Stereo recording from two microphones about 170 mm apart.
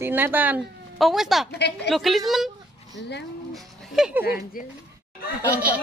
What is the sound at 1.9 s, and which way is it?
Speech, centre (ahead or behind).